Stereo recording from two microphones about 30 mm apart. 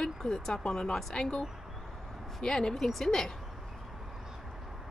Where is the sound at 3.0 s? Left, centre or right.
Centre.